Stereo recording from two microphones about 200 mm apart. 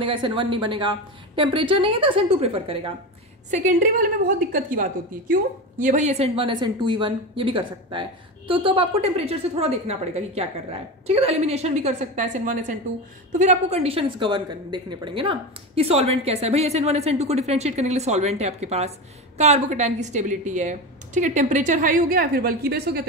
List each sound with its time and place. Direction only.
0.0 s a woman's voice: 25° right (ahead or behind)
3.4 s a woman's voice: 40° right (ahead or behind)